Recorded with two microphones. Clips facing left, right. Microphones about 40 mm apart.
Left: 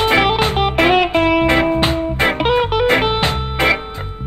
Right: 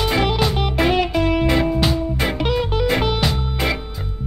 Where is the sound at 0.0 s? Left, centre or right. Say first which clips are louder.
Left 5 dB; left.